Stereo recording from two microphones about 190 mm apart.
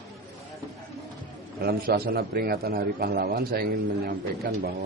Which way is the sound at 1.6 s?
55° right (ahead or behind).